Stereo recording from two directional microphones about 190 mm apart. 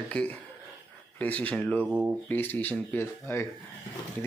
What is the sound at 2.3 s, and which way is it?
Speech, 10° left (ahead or behind).